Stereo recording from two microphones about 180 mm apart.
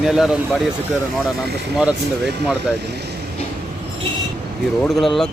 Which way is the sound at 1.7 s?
Centre (ahead or behind).